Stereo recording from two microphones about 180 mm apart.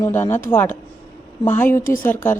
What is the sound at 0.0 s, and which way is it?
Speech, 10° left (ahead or behind).